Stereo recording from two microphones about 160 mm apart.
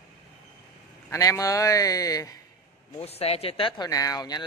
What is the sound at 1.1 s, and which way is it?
Speech, 20° left (ahead or behind).